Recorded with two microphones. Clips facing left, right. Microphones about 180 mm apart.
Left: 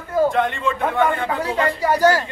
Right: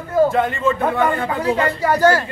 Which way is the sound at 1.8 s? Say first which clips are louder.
Even; 15° left (ahead or behind).